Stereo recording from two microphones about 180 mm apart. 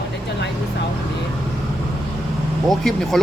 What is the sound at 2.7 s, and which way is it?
Speech, centre (ahead or behind).